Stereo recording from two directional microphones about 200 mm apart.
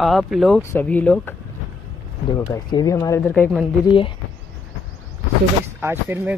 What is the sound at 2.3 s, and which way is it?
Speech, 20° left (ahead or behind).